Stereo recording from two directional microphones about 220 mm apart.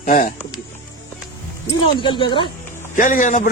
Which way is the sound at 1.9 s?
20° left (ahead or behind).